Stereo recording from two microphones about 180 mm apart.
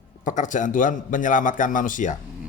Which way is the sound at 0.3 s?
45° left (ahead or behind).